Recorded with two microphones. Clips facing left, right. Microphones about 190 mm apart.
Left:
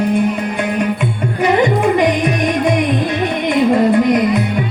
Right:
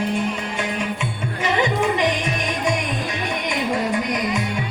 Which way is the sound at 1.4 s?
55° left (ahead or behind).